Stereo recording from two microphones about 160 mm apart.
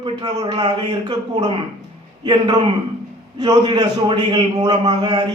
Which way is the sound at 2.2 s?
30° right (ahead or behind).